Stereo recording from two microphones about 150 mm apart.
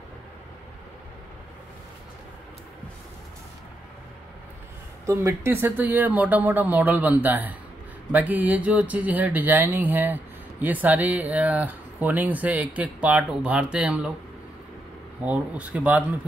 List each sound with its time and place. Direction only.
5.0 s speech: 20° right (ahead or behind)
15.2 s speech: 10° right (ahead or behind)